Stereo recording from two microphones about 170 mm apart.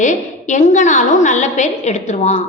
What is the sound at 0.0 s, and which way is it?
A woman's voice, 45° left (ahead or behind).